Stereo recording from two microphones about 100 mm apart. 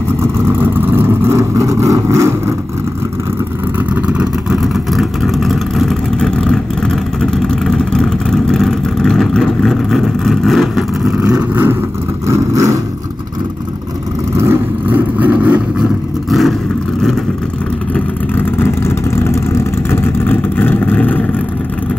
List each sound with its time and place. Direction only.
0.6 s vehicle: 20° right (ahead or behind)
3.9 s vehicle: 10° right (ahead or behind)
11.5 s vehicle: 25° right (ahead or behind)
14.3 s vehicle: 25° right (ahead or behind)
16.3 s vehicle: centre (ahead or behind)
17.9 s vehicle: 20° left (ahead or behind)